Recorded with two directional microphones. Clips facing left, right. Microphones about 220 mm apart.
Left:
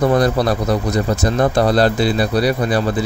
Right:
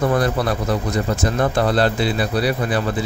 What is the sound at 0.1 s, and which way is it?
Speech, 35° left (ahead or behind).